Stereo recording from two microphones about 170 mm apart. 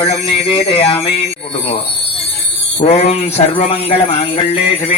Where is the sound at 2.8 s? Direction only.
40° left (ahead or behind).